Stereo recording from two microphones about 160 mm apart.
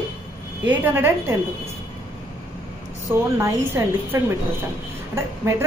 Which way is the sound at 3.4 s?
20° right (ahead or behind).